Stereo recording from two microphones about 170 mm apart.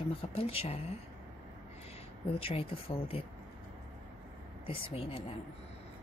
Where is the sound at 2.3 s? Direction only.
35° left (ahead or behind).